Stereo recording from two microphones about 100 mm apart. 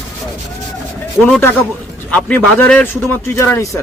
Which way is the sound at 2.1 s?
10° left (ahead or behind).